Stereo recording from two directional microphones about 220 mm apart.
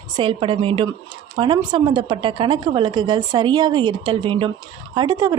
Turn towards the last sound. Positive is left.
turn(degrees=-15)  # may be behind; listen again after turning